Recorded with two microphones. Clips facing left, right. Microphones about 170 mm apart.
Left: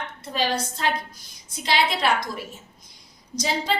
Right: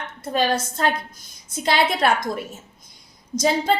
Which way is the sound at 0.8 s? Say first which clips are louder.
Right 3 dB; 50° right (ahead or behind).